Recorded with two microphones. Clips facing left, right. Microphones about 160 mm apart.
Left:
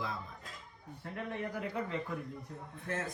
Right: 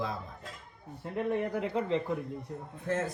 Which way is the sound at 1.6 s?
25° right (ahead or behind).